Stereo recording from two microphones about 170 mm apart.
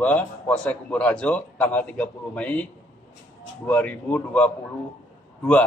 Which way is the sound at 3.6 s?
10° left (ahead or behind).